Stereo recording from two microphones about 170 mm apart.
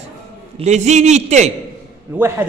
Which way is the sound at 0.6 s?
45° right (ahead or behind).